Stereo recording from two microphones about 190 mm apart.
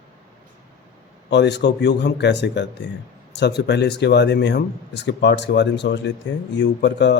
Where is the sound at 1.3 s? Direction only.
65° left (ahead or behind).